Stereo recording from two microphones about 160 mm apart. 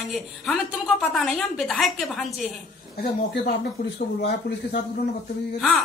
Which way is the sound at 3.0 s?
90° left.